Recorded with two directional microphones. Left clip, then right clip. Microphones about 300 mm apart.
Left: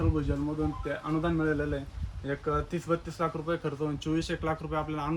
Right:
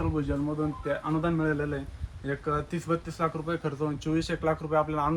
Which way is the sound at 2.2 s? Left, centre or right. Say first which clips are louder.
Right 1 dB; right.